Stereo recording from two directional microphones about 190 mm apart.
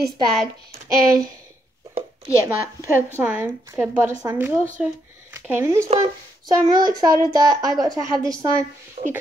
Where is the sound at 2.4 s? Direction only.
15° right (ahead or behind).